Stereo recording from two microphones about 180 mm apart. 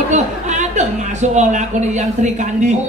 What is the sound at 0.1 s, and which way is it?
A woman's voice, 40° right (ahead or behind).